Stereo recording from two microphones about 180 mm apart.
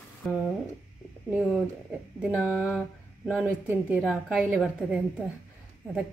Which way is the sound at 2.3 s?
10° right (ahead or behind).